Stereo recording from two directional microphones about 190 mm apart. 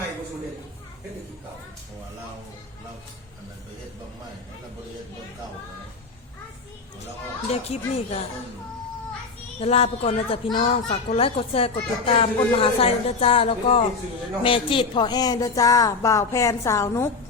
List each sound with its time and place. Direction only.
7.7 s a woman's voice: 35° left (ahead or behind)
9.6 s speech: 30° left (ahead or behind); by 17.1 s 15° left (ahead or behind)